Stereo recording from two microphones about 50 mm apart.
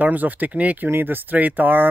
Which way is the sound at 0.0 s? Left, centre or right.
Right.